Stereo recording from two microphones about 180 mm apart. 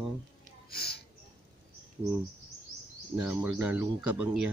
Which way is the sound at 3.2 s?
10° right (ahead or behind).